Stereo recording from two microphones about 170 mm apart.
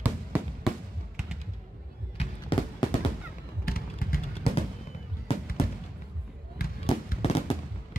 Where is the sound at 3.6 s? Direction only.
60° left (ahead or behind).